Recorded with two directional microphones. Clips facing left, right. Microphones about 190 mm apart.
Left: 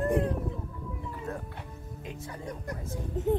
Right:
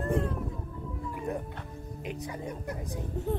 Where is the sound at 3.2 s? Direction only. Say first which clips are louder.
Left 5 dB; 20° left (ahead or behind).